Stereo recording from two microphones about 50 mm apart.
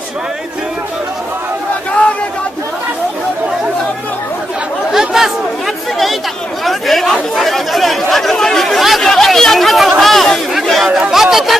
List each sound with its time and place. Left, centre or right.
1.9 s a sound: left
4.9 s chatter: centre
6.6 s chatter: centre
11.1 s speech: centre